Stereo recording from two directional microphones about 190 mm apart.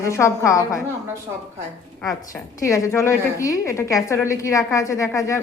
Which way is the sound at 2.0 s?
15° left (ahead or behind).